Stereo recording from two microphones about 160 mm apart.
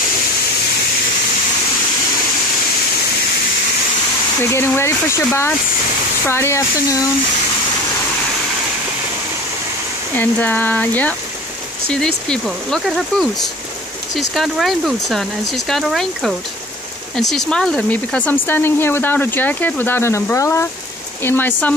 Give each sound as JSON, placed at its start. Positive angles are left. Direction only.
{"t": 4.4, "sound": "speech", "side_deg": 15}
{"t": 10.1, "sound": "speech", "side_deg": 10}